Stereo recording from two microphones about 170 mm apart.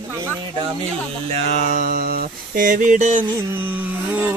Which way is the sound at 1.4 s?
55° left (ahead or behind).